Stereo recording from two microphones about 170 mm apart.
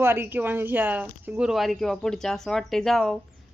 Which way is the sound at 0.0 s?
15° right (ahead or behind).